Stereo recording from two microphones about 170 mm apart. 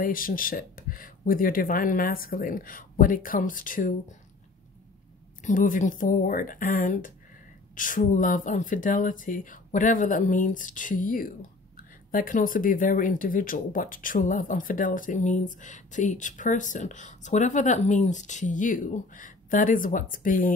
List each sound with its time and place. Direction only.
0.0 s speech: 55° left (ahead or behind)
5.4 s speech: 50° left (ahead or behind)